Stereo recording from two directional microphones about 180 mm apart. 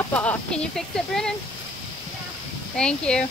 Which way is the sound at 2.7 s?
5° left (ahead or behind).